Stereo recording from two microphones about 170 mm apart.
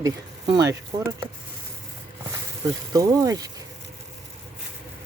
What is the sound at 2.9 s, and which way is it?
Speech, 20° right (ahead or behind).